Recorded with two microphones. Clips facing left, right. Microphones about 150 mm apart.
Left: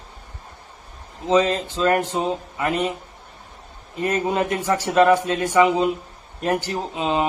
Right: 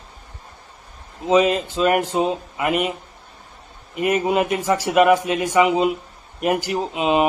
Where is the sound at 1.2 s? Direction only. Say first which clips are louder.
Right 2 dB; 10° right (ahead or behind).